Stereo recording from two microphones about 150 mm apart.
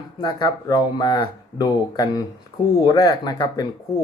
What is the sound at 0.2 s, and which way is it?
Speech, 30° left (ahead or behind).